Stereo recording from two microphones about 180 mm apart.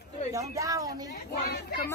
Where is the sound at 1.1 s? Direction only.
60° left (ahead or behind).